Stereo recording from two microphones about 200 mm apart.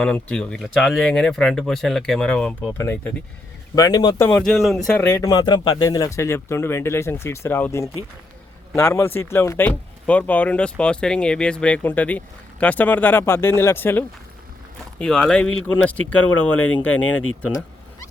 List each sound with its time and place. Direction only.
0.0 s speech: 5° left (ahead or behind)
4.3 s speech: 5° left (ahead or behind)